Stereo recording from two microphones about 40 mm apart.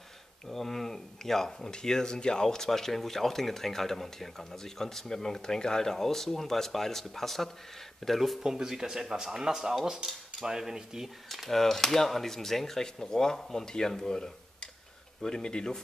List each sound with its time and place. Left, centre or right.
0.5 s speech: centre
8.2 s speech: centre
11.2 s speech: centre